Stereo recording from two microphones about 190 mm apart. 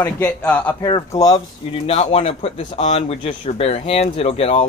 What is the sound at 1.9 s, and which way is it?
A man's voice, 35° left (ahead or behind).